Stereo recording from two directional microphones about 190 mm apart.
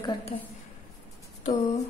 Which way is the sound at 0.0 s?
25° left (ahead or behind).